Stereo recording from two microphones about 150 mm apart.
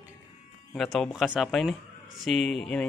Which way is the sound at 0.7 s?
5° left (ahead or behind).